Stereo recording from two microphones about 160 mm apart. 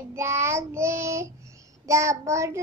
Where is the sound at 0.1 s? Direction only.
15° right (ahead or behind).